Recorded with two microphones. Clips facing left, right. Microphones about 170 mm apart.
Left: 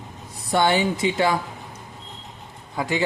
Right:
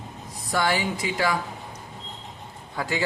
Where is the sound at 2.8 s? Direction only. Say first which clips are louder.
Left 3 dB; 20° left (ahead or behind).